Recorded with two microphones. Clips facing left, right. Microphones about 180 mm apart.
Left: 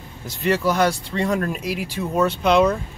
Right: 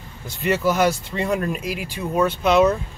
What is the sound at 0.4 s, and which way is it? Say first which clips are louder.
Speech: even; 5° right (ahead or behind).